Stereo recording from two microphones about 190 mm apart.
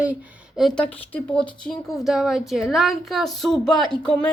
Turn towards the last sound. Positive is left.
turn(degrees=5)  # may be behind; listen again after turning